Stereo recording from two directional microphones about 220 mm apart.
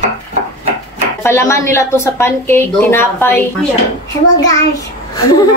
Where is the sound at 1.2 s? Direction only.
10° left (ahead or behind).